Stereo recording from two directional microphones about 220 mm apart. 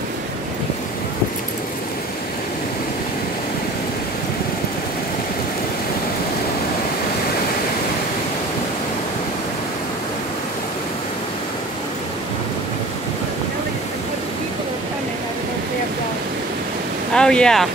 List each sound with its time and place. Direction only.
17.1 s speech: 5° left (ahead or behind)